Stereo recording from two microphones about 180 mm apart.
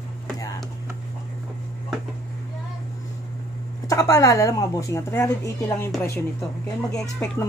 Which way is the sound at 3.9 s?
20° left (ahead or behind).